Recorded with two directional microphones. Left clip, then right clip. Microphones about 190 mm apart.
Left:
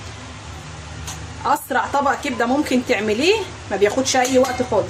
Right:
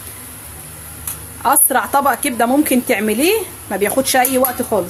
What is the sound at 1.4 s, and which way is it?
A woman's voice, 50° right (ahead or behind).